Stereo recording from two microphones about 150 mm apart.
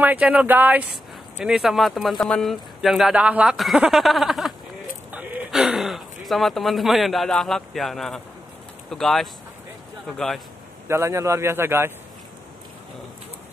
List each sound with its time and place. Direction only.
0.0 s speech: 10° right (ahead or behind)
10.9 s speech: 20° right (ahead or behind)